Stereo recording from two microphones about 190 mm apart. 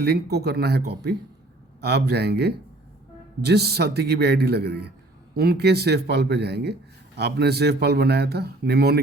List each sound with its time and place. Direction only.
0.0 s speech: 60° right (ahead or behind)